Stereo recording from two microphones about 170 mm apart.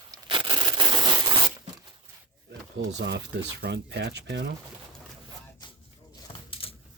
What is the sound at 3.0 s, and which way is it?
Speech, 85° right.